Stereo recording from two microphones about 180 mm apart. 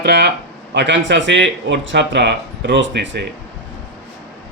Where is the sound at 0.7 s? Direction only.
75° right (ahead or behind).